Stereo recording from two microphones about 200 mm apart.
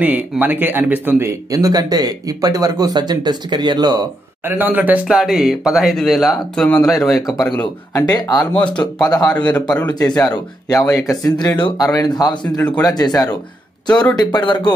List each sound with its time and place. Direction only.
0.0 s speech: 10° right (ahead or behind)
4.6 s speech: 10° right (ahead or behind)
7.9 s speech: 20° left (ahead or behind)
9.7 s speech: 5° left (ahead or behind)
9.9 s speech: 20° left (ahead or behind)